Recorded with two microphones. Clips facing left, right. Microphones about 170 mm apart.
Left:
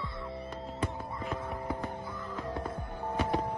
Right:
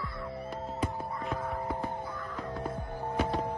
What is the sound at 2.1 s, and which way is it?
Music, 25° left (ahead or behind).